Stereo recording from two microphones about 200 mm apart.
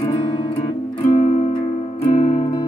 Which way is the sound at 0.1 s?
25° left (ahead or behind).